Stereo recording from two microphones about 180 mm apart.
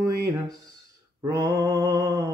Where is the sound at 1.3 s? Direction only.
20° right (ahead or behind).